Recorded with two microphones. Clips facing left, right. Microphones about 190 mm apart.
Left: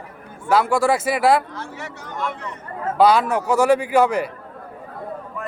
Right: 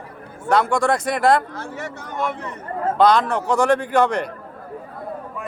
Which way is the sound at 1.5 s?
50° right (ahead or behind).